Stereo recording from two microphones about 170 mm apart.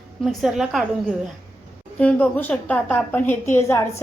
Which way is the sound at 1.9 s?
10° left (ahead or behind).